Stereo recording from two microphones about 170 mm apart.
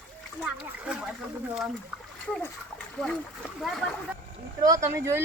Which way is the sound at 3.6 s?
Centre (ahead or behind).